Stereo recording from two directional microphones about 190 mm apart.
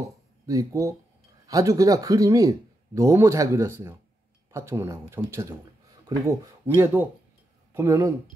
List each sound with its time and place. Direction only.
0.5 s speech: 15° right (ahead or behind)